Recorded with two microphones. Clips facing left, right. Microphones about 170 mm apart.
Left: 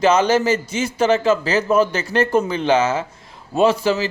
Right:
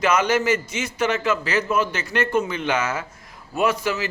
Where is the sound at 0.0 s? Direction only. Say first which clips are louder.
Left 4 dB; 30° left (ahead or behind).